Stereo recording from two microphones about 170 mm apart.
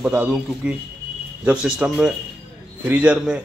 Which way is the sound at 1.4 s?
5° right (ahead or behind).